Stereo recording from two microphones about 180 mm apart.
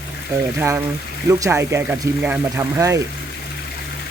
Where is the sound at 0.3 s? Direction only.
15° right (ahead or behind).